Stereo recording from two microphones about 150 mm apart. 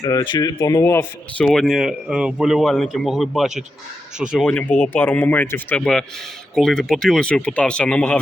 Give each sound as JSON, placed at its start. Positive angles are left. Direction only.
{"t": 0.0, "sound": "speech", "side_deg": 20}
{"t": 1.5, "sound": "speech", "side_deg": 0}
{"t": 4.4, "sound": "speech", "side_deg": 10}